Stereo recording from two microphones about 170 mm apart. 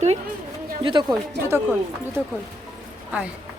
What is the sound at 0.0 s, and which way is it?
Speech, 40° right (ahead or behind).